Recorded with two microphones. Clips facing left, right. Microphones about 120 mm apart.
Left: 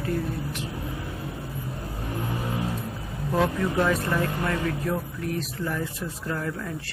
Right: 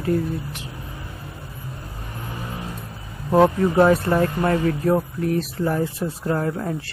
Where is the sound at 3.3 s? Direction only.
40° right (ahead or behind).